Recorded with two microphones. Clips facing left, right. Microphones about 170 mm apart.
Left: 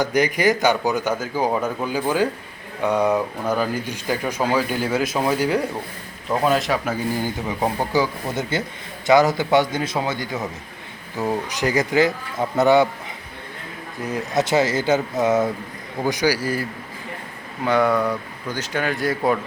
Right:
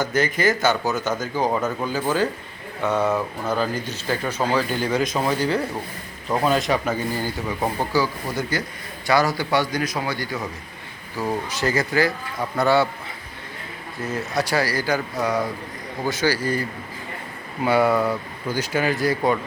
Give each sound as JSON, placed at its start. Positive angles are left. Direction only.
{"t": 0.0, "sound": "speech", "side_deg": 15}
{"t": 7.3, "sound": "a man's voice", "side_deg": 20}
{"t": 14.0, "sound": "a man's voice", "side_deg": 15}
{"t": 17.6, "sound": "speech", "side_deg": -5}